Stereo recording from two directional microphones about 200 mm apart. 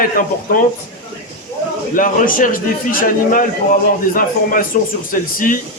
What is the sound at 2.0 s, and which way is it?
A man's voice, 45° left (ahead or behind).